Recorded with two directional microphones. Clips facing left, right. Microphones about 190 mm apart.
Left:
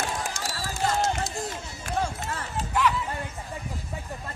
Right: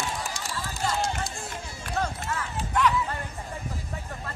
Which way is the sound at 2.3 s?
40° left (ahead or behind).